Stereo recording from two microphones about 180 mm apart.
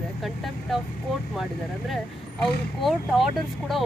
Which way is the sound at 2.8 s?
Centre (ahead or behind).